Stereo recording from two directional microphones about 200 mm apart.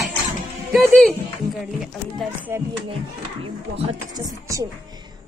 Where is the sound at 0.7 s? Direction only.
Centre (ahead or behind).